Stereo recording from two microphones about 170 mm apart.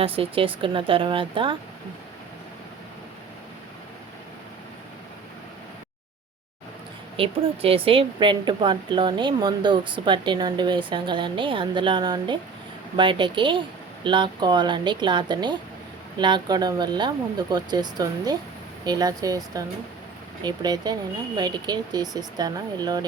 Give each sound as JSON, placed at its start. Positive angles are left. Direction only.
{"t": 0.0, "sound": "speech", "side_deg": -35}
{"t": 7.2, "sound": "a woman's voice", "side_deg": -35}